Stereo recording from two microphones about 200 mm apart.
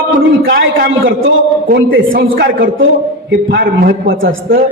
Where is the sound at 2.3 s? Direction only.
45° right (ahead or behind).